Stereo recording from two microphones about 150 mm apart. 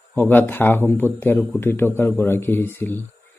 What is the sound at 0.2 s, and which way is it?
A man's voice, 10° left (ahead or behind).